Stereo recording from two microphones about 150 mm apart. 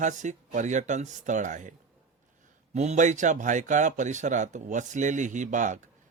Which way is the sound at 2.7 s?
50° right (ahead or behind).